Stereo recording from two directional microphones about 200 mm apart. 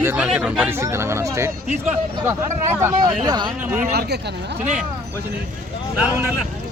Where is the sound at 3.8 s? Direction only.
50° right (ahead or behind).